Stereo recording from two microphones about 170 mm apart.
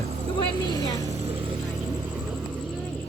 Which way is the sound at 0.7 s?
20° left (ahead or behind).